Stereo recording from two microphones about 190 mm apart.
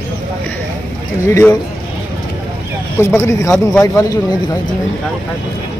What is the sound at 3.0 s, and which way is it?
Speech, 15° left (ahead or behind).